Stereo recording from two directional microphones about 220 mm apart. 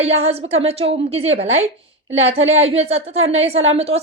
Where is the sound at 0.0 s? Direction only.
30° right (ahead or behind).